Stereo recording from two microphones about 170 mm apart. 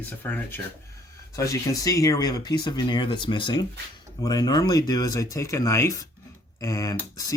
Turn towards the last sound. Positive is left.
turn(degrees=20)  # may be behind; listen again after turning